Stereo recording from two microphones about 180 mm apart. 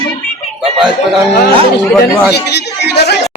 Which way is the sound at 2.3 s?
65° left (ahead or behind).